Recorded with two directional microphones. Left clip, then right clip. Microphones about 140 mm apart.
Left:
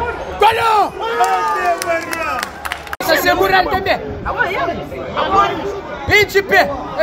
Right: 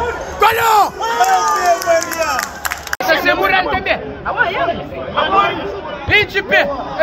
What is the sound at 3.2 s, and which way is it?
Speech, 90° left.